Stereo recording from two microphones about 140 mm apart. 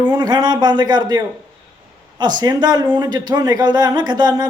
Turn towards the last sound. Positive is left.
turn(degrees=-30)  # may be behind; listen again after turning